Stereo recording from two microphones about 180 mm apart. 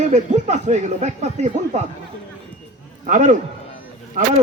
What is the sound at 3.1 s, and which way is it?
A man's voice, 45° right (ahead or behind).